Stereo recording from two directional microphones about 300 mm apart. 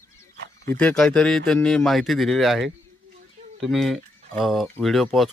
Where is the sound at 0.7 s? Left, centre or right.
Centre.